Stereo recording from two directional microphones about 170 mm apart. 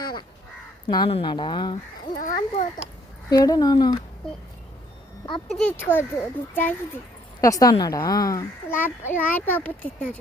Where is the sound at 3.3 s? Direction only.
20° left (ahead or behind).